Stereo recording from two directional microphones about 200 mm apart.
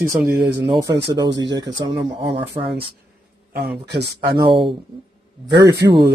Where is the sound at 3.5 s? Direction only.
50° right (ahead or behind).